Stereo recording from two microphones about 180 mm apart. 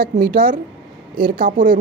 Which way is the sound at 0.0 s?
55° right (ahead or behind).